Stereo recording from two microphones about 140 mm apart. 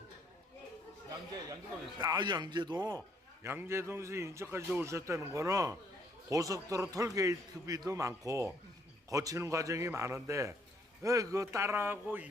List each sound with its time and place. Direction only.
2.0 s a man's voice: 30° right (ahead or behind)
3.4 s a man's voice: 15° right (ahead or behind)